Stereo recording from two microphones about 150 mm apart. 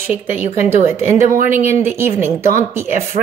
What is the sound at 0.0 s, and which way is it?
A woman's voice, 15° right (ahead or behind).